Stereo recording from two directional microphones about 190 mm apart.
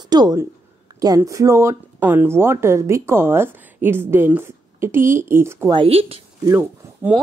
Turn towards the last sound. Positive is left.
turn(degrees=-10)  # may be behind; listen again after turning